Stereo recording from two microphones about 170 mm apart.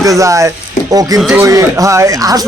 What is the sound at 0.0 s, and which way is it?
Speech, 20° right (ahead or behind).